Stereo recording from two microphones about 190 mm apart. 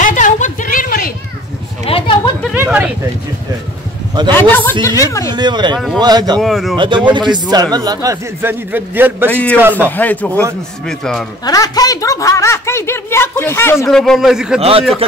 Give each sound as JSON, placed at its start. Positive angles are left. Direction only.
{"t": 0.0, "sound": "a sound", "side_deg": 40}
{"t": 1.9, "sound": "a sound", "side_deg": 30}
{"t": 2.5, "sound": "a sound", "side_deg": -10}
{"t": 4.3, "sound": "a woman's voice", "side_deg": 10}
{"t": 5.3, "sound": "speech", "side_deg": -25}
{"t": 6.4, "sound": "a man's voice", "side_deg": 0}
{"t": 7.1, "sound": "speech", "side_deg": -25}
{"t": 9.3, "sound": "a woman's voice", "side_deg": 5}
{"t": 9.6, "sound": "a man's voice", "side_deg": -10}
{"t": 9.8, "sound": "a woman's voice", "side_deg": 10}
{"t": 11.4, "sound": "a woman's voice", "side_deg": 20}
{"t": 13.8, "sound": "a man's voice", "side_deg": 0}
{"t": 14.6, "sound": "a man's voice", "side_deg": -30}